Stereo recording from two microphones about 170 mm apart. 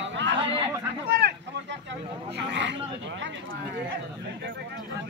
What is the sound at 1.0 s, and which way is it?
Vehicle, 70° right (ahead or behind).